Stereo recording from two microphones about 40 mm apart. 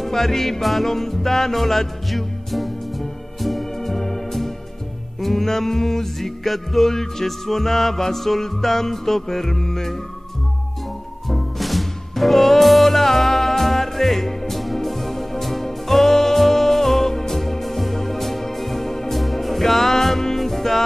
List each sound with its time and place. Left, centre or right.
0.0 s music: centre
11.2 s music: centre